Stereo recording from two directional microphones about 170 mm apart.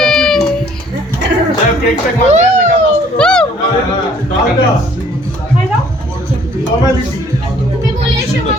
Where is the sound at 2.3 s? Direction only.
45° right (ahead or behind).